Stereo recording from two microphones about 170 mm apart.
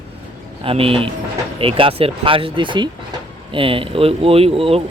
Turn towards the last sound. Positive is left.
turn(degrees=-35)  # may be behind; listen again after turning